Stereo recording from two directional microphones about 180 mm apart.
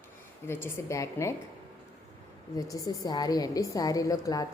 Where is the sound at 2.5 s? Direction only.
20° left (ahead or behind).